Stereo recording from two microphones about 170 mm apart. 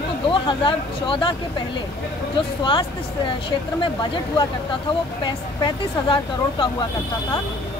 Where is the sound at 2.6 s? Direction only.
30° left (ahead or behind).